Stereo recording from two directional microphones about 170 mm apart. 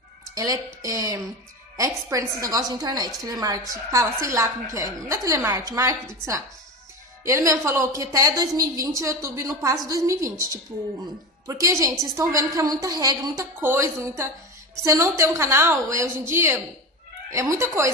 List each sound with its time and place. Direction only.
0.3 s music: 20° right (ahead or behind)
0.8 s a woman's voice: 20° right (ahead or behind)
7.2 s a woman's voice: 15° right (ahead or behind)